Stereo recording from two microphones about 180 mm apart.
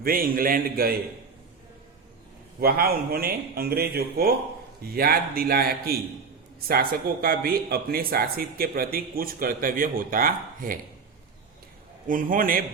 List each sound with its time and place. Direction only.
0.0 s speech: 55° right (ahead or behind)
2.6 s speech: 60° right (ahead or behind)
12.0 s speech: 50° right (ahead or behind)